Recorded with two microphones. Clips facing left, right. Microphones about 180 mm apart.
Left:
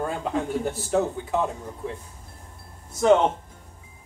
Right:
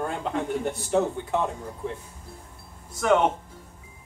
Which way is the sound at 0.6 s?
Centre (ahead or behind).